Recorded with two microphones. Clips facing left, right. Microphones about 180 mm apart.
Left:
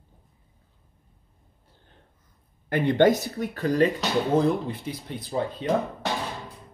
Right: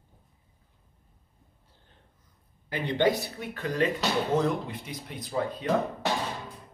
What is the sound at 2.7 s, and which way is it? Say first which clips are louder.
Speech: left 6 dB; 50° left (ahead or behind).